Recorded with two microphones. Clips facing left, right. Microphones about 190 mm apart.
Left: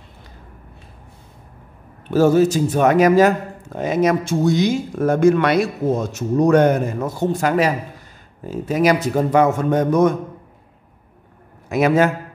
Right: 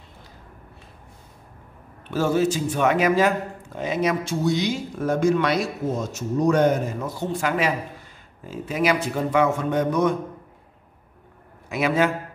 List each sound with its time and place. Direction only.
2.0 s speech: 40° left (ahead or behind)
11.7 s speech: 45° left (ahead or behind)